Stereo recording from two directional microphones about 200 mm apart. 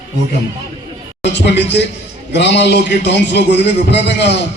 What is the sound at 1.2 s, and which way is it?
A man's voice, 60° left (ahead or behind).